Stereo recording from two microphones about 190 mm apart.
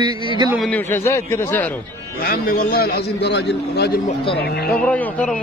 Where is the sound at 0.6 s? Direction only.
10° left (ahead or behind).